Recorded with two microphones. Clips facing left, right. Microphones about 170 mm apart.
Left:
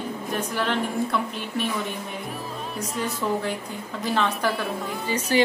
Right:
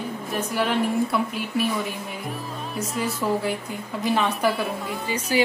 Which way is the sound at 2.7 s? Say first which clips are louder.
Right 2 dB; 5° right (ahead or behind).